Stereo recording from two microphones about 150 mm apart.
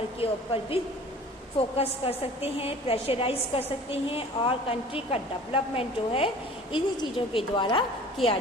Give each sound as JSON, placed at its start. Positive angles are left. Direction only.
{"t": 0.2, "sound": "a woman's voice", "side_deg": 40}